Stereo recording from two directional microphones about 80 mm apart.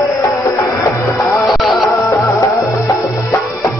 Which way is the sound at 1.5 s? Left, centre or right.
Centre.